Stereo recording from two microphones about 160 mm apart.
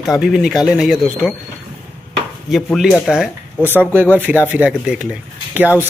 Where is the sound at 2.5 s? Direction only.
Centre (ahead or behind).